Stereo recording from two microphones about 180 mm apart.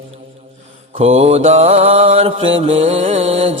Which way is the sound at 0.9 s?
35° right (ahead or behind).